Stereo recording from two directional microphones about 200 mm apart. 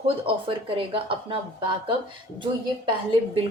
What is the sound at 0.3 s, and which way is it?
A woman's voice, 25° right (ahead or behind).